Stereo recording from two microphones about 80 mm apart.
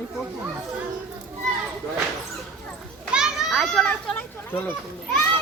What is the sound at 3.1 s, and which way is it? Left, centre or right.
Children playing, centre.